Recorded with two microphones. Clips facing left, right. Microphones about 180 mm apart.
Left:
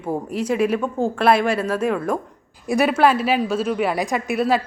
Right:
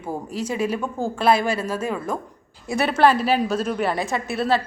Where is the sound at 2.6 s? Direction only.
15° left (ahead or behind).